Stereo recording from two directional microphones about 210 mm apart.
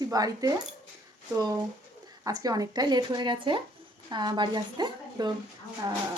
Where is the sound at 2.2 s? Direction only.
15° right (ahead or behind).